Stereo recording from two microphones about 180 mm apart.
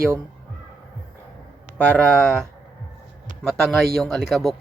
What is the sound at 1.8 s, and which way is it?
Speech, 5° left (ahead or behind).